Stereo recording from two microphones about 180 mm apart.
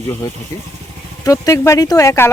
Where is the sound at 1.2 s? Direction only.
20° left (ahead or behind).